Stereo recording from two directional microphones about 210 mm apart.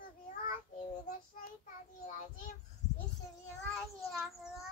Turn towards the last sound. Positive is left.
turn(degrees=0)  # may be behind; listen again after turning